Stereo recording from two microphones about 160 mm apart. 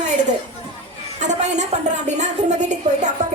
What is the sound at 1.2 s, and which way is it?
A woman's voice, 50° right (ahead or behind).